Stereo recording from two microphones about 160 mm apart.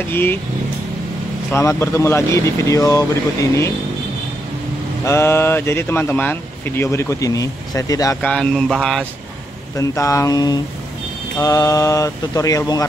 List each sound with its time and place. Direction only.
0.1 s speech: 15° left (ahead or behind)
1.5 s speech: 15° left (ahead or behind)
5.0 s speech: 15° left (ahead or behind)
8.2 s a sound: 5° left (ahead or behind)
9.8 s speech: 20° left (ahead or behind)